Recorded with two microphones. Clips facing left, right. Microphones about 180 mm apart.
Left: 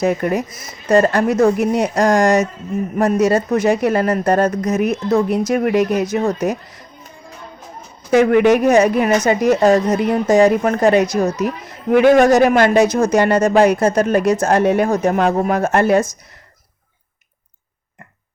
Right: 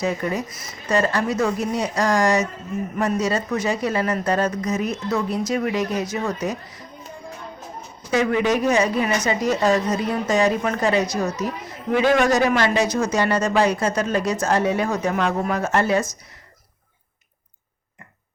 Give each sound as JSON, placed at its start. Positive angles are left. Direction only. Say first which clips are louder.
{"t": 0.0, "sound": "speech", "louder": "left 6 dB", "side_deg": 55}
{"t": 0.9, "sound": "speech", "louder": "left 7 dB", "side_deg": 45}
{"t": 8.1, "sound": "speech", "louder": "left 8 dB", "side_deg": 60}